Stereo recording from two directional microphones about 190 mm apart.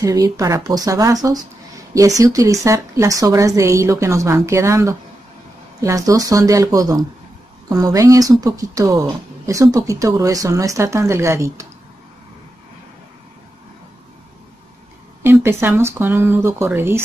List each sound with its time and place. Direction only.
0.0 s speech: 15° right (ahead or behind)
15.2 s speech: 10° right (ahead or behind)